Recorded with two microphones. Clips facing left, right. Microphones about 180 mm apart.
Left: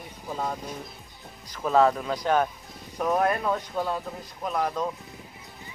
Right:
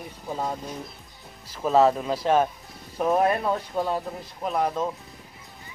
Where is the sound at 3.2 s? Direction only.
5° right (ahead or behind).